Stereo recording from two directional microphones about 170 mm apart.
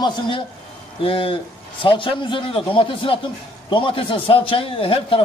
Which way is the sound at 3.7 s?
30° left (ahead or behind).